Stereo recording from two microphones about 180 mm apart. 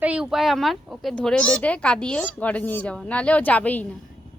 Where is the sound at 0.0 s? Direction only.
5° right (ahead or behind).